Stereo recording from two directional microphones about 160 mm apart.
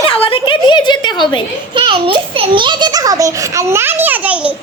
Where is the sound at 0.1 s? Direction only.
35° left (ahead or behind).